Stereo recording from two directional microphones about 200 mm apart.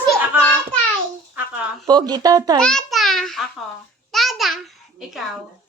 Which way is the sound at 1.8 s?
20° right (ahead or behind).